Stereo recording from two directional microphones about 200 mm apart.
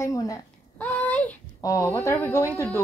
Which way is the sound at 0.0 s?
15° left (ahead or behind).